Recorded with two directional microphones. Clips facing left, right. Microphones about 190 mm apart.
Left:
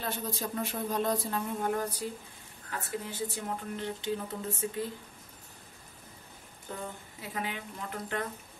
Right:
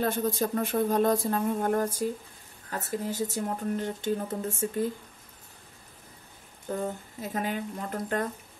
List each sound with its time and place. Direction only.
0.0 s speech: 50° right (ahead or behind)
6.7 s speech: 45° right (ahead or behind)